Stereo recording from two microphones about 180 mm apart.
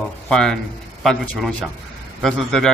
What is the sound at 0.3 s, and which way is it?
Speech, 5° left (ahead or behind).